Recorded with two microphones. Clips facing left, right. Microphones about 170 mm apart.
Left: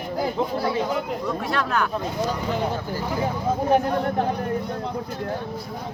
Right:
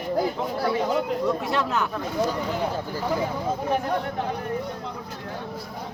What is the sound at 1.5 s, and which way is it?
Speech, 20° right (ahead or behind).